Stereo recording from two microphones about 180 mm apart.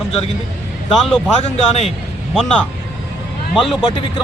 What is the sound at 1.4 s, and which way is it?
Speech, 35° left (ahead or behind).